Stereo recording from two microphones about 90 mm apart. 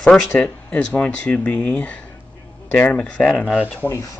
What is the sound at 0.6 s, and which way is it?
Speech, 15° left (ahead or behind).